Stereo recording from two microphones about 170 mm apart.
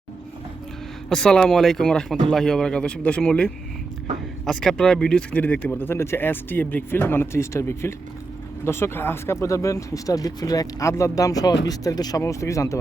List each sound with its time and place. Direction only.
1.1 s speech: 5° left (ahead or behind); by 12.8 s 20° left (ahead or behind)